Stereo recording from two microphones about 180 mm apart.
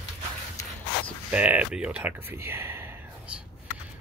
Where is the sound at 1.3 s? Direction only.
10° right (ahead or behind).